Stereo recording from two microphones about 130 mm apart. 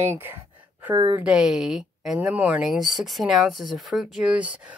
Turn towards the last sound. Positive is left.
turn(degrees=-10)  # may be behind; listen again after turning